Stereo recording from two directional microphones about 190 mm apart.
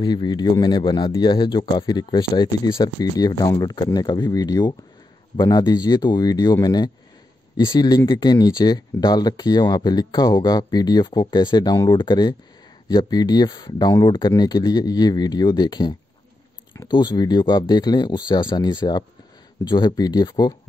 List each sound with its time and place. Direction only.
0.0 s speech: 25° left (ahead or behind)